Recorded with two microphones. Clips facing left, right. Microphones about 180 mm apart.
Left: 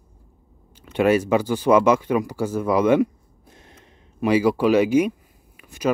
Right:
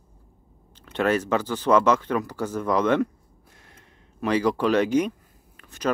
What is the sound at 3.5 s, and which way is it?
Gasp, 20° left (ahead or behind).